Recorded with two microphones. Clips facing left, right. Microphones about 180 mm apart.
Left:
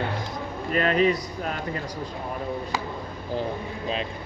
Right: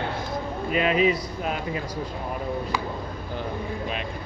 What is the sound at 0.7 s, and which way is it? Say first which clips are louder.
Speech: even; 5° right (ahead or behind).